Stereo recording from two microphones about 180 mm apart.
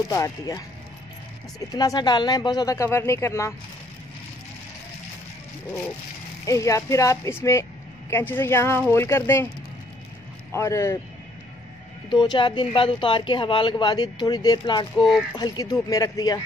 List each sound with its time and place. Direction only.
0.1 s speech: 15° left (ahead or behind)
1.7 s a woman's voice: 20° left (ahead or behind)
6.4 s speech: 15° left (ahead or behind)
10.5 s speech: 15° left (ahead or behind)
12.1 s a woman's voice: 25° left (ahead or behind)